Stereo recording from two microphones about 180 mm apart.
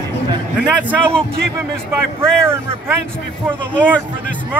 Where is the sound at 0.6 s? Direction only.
10° right (ahead or behind).